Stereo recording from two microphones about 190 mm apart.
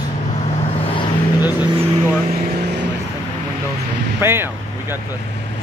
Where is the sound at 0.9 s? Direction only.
20° left (ahead or behind).